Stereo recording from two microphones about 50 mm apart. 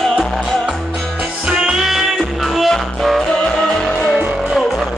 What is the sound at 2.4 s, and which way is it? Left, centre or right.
Music, centre.